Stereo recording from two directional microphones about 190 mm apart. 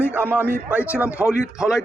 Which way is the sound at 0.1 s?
10° right (ahead or behind).